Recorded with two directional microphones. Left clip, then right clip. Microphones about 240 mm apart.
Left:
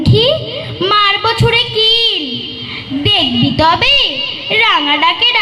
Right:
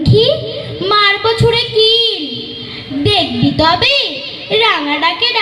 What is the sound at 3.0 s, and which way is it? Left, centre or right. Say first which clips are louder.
A woman's voice: left 1 dB; left.